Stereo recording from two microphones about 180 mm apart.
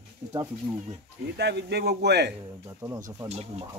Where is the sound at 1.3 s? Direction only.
65° right (ahead or behind).